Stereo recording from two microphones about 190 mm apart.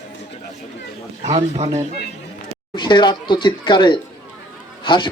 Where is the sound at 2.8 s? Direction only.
25° left (ahead or behind).